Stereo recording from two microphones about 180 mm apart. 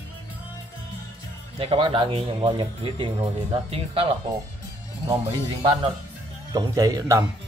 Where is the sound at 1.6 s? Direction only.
30° right (ahead or behind).